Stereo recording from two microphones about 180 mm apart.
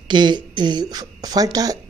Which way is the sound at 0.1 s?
25° right (ahead or behind).